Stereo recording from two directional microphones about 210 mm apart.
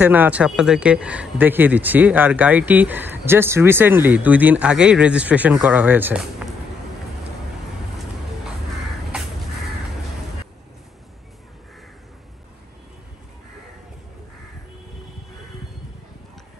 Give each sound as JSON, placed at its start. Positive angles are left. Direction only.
{"t": 0.0, "sound": "speech", "side_deg": -10}